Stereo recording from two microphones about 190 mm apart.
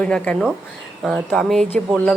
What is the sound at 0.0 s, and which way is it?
A woman's voice, 5° left (ahead or behind).